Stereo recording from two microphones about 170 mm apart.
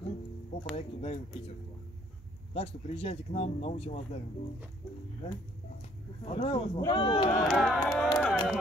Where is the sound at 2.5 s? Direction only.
35° left (ahead or behind).